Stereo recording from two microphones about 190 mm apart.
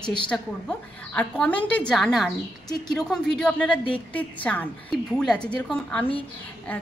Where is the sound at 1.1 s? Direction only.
5° left (ahead or behind).